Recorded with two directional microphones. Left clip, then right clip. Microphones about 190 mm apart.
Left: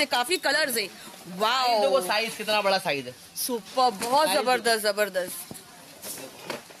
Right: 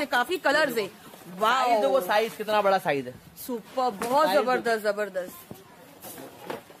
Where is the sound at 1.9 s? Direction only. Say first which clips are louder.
Right 1 dB; 15° right (ahead or behind).